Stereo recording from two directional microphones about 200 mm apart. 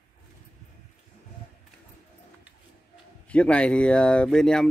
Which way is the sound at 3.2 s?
5° left (ahead or behind).